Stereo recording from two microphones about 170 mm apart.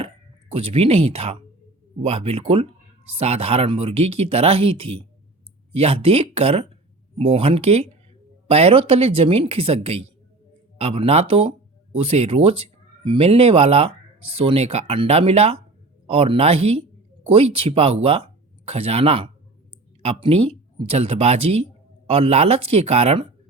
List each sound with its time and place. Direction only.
0.0 s speech: 35° right (ahead or behind)